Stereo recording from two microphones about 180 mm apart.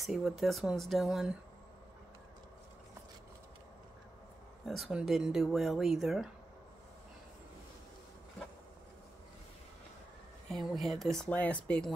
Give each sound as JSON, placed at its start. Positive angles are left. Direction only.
{"t": 0.0, "sound": "speech", "side_deg": 0}
{"t": 4.6, "sound": "speech", "side_deg": 0}
{"t": 10.5, "sound": "speech", "side_deg": 0}